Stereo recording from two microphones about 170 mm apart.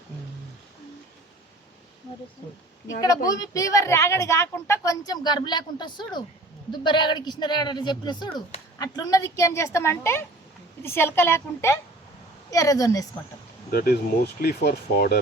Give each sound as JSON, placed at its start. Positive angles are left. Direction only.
{"t": 3.2, "sound": "a woman's voice", "side_deg": 20}
{"t": 13.7, "sound": "speech", "side_deg": 65}